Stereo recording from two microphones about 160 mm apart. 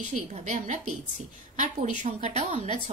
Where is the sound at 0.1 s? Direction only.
50° right (ahead or behind).